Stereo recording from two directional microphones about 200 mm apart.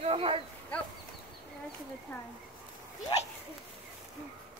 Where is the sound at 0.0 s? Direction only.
30° right (ahead or behind).